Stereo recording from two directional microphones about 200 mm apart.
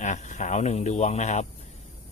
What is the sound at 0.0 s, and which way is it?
Speech, 35° left (ahead or behind).